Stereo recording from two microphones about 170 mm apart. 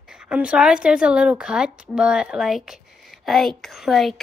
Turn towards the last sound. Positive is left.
turn(degrees=0)  # may be behind; listen again after turning